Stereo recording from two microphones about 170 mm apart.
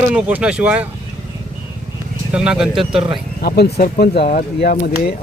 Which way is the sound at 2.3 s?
5° right (ahead or behind).